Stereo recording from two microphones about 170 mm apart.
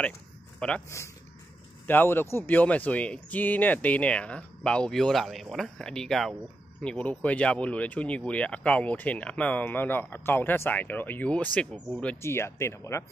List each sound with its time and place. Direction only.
0.6 s a man's voice: 5° left (ahead or behind)
0.8 s speech: 15° left (ahead or behind)